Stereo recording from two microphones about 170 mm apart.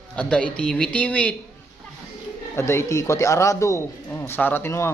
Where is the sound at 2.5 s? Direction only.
15° left (ahead or behind).